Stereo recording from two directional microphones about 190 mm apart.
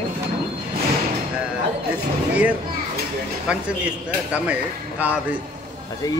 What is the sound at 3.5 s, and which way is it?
A man's voice, 5° right (ahead or behind).